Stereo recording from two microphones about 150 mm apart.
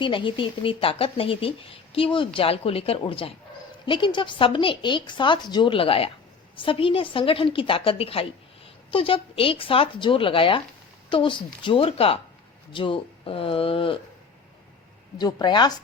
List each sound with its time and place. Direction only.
0.0 s a woman's voice: 35° left (ahead or behind)
15.2 s speech: 30° left (ahead or behind)